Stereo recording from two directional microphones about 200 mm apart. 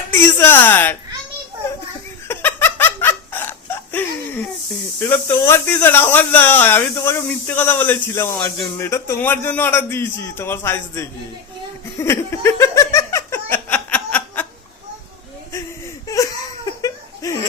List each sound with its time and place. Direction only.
0.3 s speech: 10° left (ahead or behind)
2.2 s laughter: 10° left (ahead or behind)
4.9 s speech: 10° left (ahead or behind)
11.9 s giggle: 15° left (ahead or behind)
16.0 s laughter: 15° left (ahead or behind)